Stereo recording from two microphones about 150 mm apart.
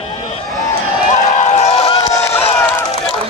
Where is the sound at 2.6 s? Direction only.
15° left (ahead or behind).